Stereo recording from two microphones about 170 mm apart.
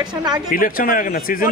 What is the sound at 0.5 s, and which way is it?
Speech, 55° left (ahead or behind).